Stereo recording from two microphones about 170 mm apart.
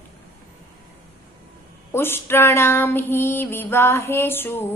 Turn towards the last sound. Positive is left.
turn(degrees=15)  # may be behind; listen again after turning